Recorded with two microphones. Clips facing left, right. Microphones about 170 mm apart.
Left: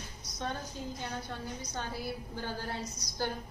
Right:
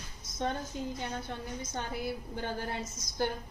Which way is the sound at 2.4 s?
20° right (ahead or behind).